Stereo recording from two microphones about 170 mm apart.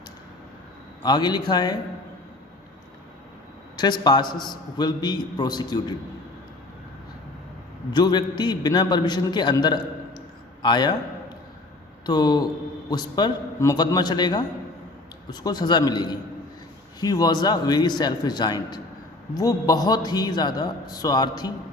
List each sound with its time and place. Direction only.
1.0 s a man's voice: 25° left (ahead or behind)
3.8 s a man's voice: 25° left (ahead or behind)
7.9 s a man's voice: 25° left (ahead or behind)
12.0 s a man's voice: 25° left (ahead or behind)